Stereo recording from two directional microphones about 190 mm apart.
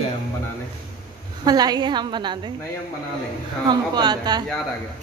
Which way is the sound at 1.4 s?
20° right (ahead or behind).